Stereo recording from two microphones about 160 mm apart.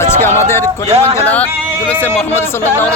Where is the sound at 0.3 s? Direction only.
15° left (ahead or behind).